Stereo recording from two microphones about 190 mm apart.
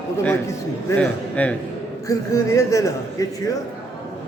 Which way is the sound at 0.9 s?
5° left (ahead or behind).